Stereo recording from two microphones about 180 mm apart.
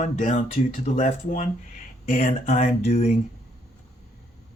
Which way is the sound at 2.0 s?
50° left (ahead or behind).